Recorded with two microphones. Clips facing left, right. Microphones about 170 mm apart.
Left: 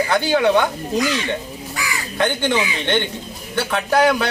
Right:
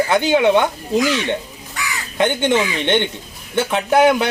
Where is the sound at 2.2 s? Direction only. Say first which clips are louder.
Right 3 dB; 20° right (ahead or behind).